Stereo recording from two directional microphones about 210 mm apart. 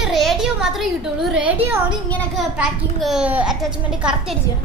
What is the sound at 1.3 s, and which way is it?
A child's voice, 5° right (ahead or behind).